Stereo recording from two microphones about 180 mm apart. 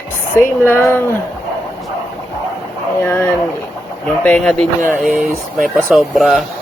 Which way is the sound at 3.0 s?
10° left (ahead or behind).